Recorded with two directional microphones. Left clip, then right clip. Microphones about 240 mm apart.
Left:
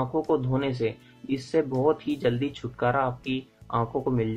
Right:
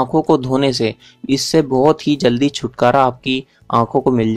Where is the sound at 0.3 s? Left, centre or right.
Right.